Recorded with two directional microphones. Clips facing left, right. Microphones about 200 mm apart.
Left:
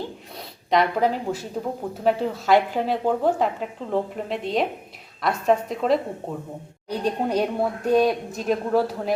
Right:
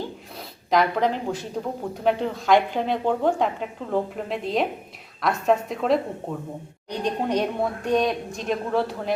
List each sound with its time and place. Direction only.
0.7 s speech: 5° left (ahead or behind)